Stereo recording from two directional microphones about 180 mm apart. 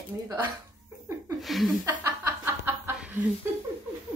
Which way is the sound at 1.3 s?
Centre (ahead or behind).